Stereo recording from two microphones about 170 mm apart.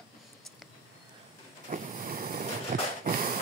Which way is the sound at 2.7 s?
50° right (ahead or behind).